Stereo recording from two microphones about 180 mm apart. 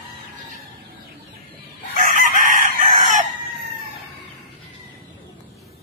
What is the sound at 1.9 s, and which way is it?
Chicken, 50° right (ahead or behind).